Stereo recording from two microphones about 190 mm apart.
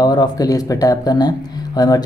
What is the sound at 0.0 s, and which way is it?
Speech, 20° left (ahead or behind).